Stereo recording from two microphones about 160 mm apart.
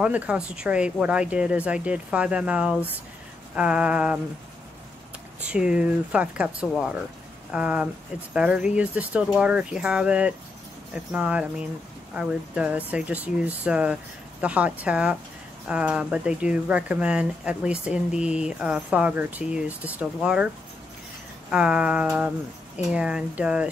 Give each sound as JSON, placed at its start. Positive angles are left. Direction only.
{"t": 0.0, "sound": "speech", "side_deg": -5}
{"t": 5.4, "sound": "speech", "side_deg": -5}
{"t": 21.5, "sound": "speech", "side_deg": -5}